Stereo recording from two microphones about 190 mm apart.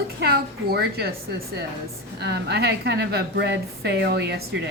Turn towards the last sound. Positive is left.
turn(degrees=-55)  # may be behind; listen again after turning